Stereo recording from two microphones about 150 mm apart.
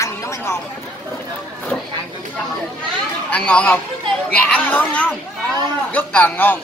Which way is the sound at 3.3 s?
10° left (ahead or behind).